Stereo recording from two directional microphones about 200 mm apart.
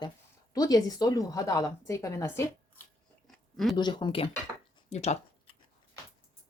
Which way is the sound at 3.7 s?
20° left (ahead or behind).